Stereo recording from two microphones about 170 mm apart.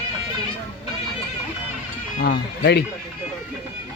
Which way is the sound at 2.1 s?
70° left (ahead or behind).